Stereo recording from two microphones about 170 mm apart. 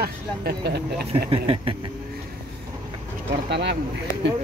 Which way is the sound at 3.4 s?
85° right.